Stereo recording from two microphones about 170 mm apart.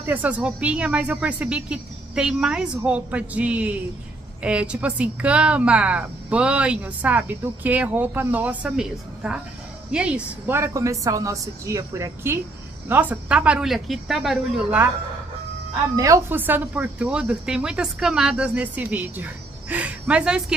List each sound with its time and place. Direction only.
0.0 s a woman's voice: 10° right (ahead or behind)
16.0 s a woman's voice: 15° right (ahead or behind)